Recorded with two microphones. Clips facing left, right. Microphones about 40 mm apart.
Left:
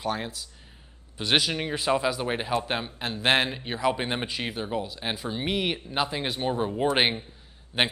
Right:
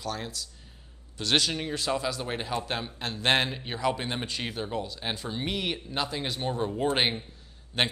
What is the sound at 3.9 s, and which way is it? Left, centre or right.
Speech, left.